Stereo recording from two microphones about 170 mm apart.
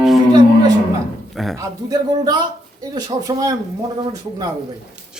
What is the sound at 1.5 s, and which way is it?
A man's voice, 25° right (ahead or behind).